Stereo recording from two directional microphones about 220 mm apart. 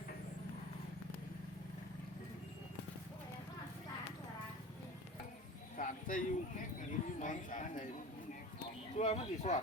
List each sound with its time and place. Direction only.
5.7 s speech: 35° left (ahead or behind)
9.0 s speech: 30° left (ahead or behind)